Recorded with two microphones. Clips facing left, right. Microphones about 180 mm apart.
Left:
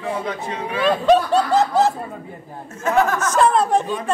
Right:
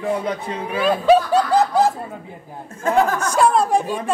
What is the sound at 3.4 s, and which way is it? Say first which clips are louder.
Speech: right 1 dB; 10° right (ahead or behind).